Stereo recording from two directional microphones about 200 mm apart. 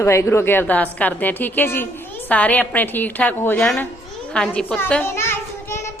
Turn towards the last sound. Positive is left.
turn(degrees=15)  # may be behind; listen again after turning